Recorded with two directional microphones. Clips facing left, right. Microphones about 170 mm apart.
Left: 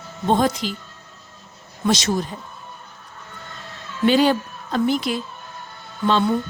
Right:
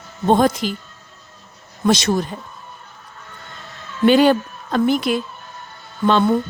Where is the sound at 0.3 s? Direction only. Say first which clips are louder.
Right 4 dB; 50° right (ahead or behind).